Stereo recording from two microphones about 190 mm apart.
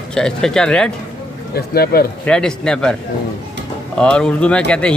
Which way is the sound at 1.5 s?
55° left (ahead or behind).